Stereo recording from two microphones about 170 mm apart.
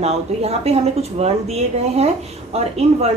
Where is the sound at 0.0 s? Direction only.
40° right (ahead or behind).